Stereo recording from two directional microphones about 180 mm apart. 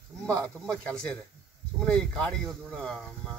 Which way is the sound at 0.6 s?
5° left (ahead or behind).